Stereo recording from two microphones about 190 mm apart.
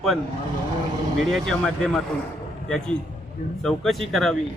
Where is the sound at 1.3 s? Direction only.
5° left (ahead or behind).